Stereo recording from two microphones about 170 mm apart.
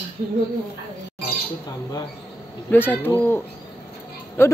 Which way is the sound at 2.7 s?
10° left (ahead or behind).